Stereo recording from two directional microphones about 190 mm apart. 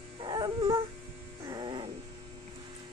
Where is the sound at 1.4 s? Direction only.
25° right (ahead or behind).